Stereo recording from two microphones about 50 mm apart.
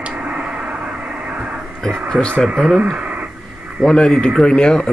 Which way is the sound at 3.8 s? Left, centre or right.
Centre.